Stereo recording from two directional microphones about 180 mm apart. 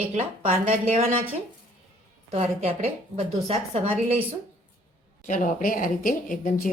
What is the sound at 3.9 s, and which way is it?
Speech, 10° right (ahead or behind).